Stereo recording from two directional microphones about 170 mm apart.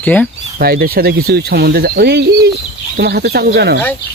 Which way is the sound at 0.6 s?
65° right (ahead or behind).